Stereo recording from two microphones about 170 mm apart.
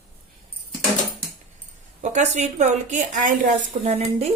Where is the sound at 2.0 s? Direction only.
45° right (ahead or behind).